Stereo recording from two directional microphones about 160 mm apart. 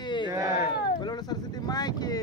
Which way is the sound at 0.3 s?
20° right (ahead or behind).